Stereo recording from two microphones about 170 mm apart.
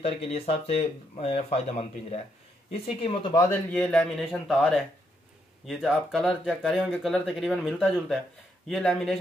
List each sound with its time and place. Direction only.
0.0 s speech: 35° left (ahead or behind)
3.4 s a man's voice: 10° left (ahead or behind)